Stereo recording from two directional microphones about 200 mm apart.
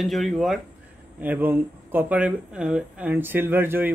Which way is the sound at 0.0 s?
Centre (ahead or behind).